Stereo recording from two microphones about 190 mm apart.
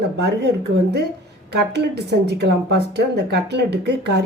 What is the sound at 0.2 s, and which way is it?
A woman's voice, 60° right (ahead or behind).